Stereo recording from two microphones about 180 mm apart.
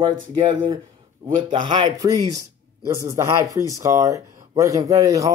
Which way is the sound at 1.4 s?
25° right (ahead or behind).